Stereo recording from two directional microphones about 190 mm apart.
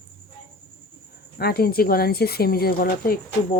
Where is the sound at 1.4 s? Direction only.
55° left (ahead or behind).